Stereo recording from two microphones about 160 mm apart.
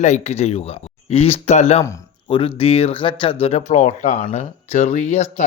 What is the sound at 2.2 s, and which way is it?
Speech, 35° left (ahead or behind).